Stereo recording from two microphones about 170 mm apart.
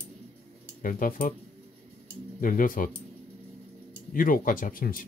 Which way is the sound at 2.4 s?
55° left (ahead or behind).